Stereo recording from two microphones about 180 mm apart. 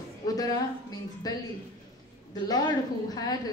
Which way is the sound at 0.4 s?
20° left (ahead or behind).